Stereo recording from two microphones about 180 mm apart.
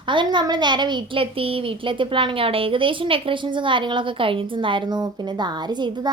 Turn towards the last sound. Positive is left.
turn(degrees=-25)  # may be behind; listen again after turning